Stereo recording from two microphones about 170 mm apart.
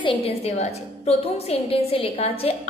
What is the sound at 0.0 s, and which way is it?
A woman's voice, 35° left (ahead or behind).